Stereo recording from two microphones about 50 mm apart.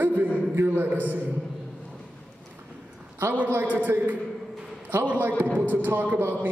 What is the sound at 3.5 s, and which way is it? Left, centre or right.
A man's voice, right.